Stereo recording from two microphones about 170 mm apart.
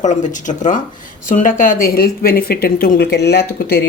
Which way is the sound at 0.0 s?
45° left (ahead or behind).